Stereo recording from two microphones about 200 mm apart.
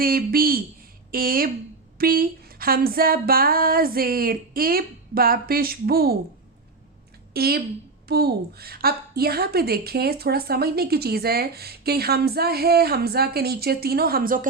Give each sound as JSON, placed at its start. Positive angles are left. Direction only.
{"t": 0.0, "sound": "a woman's voice", "side_deg": -45}
{"t": 7.3, "sound": "a woman's voice", "side_deg": -50}